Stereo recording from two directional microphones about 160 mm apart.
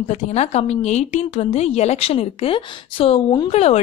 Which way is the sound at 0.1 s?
45° left (ahead or behind).